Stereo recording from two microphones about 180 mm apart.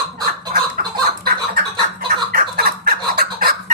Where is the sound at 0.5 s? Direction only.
55° right (ahead or behind).